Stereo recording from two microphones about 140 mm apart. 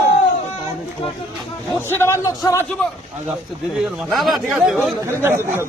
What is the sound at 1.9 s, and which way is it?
Speech, 15° left (ahead or behind).